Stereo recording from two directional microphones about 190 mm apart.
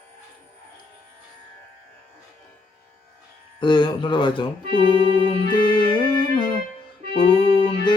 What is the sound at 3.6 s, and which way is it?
Speech, 25° left (ahead or behind).